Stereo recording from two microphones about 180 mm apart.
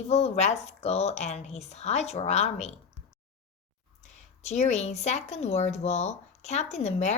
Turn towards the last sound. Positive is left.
turn(degrees=35)  # may be behind; listen again after turning